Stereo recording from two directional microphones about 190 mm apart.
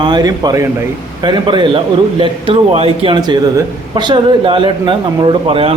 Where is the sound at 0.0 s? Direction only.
20° right (ahead or behind).